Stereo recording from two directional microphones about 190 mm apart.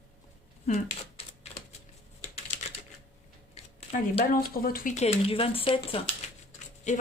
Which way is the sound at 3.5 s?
35° left (ahead or behind).